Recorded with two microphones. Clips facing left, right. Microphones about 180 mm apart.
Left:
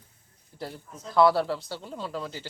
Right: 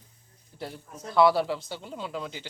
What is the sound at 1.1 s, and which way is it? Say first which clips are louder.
A man's voice: even; centre (ahead or behind).